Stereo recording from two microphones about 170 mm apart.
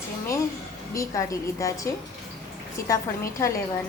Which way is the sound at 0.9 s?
20° left (ahead or behind).